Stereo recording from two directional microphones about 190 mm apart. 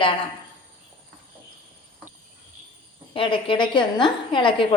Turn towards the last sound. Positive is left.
turn(degrees=25)  # may be behind; listen again after turning